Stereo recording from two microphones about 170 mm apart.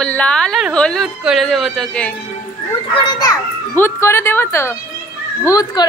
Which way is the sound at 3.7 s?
15° left (ahead or behind).